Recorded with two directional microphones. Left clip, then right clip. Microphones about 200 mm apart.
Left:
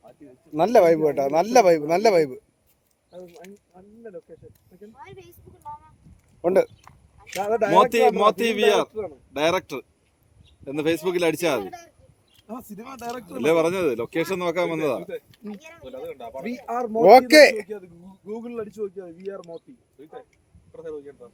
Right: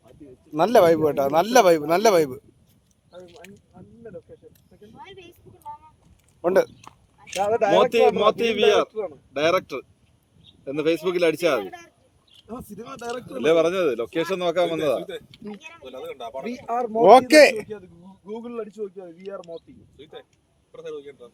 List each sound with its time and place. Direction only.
0.5 s speech: centre (ahead or behind)
3.7 s a sound: 35° left (ahead or behind)
5.0 s a sound: 20° left (ahead or behind)
6.4 s speech: centre (ahead or behind)
7.3 s speech: 45° left (ahead or behind)
11.6 s speech: 5° left (ahead or behind)
12.4 s speech: 55° left (ahead or behind)
15.4 s speech: 20° left (ahead or behind)
16.0 s speech: 40° right (ahead or behind)
16.5 s speech: 50° left (ahead or behind)
17.0 s speech: 5° left (ahead or behind)
18.3 s speech: 45° left (ahead or behind)
20.7 s a man's voice: 15° right (ahead or behind)